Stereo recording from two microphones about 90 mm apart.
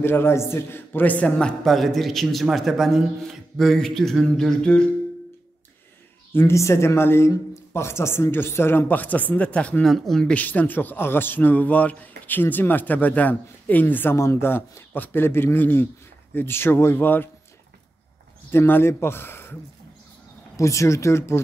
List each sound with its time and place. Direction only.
0.0 s a man's voice: 25° left (ahead or behind); by 4.8 s 10° left (ahead or behind)
6.3 s a man's voice: 30° left (ahead or behind); by 9.8 s 15° left (ahead or behind)
9.8 s a man's voice: centre (ahead or behind)
10.3 s a man's voice: 20° left (ahead or behind)
18.5 s a man's voice: 25° left (ahead or behind)
20.5 s speech: 35° left (ahead or behind)